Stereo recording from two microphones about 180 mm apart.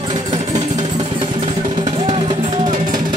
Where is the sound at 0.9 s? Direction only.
25° right (ahead or behind).